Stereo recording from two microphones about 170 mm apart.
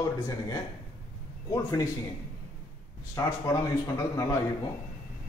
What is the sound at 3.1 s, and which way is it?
A man's voice, 20° left (ahead or behind).